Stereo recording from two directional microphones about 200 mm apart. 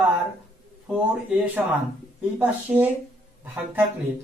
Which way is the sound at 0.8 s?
5° right (ahead or behind).